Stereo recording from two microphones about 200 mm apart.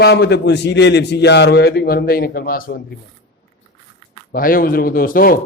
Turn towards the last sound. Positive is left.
turn(degrees=45)  # may be behind; listen again after turning